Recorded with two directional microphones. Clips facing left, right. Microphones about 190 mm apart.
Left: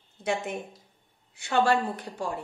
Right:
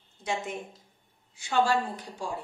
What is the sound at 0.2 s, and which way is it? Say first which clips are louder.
A woman's voice: left 3 dB; 60° left (ahead or behind).